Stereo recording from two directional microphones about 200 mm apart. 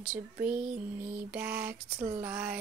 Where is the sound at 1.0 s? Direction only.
10° right (ahead or behind).